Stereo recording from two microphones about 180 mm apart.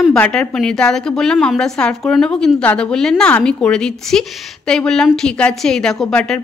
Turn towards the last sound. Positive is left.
turn(degrees=5)  # may be behind; listen again after turning